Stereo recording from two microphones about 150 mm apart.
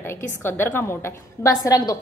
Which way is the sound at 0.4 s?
15° left (ahead or behind).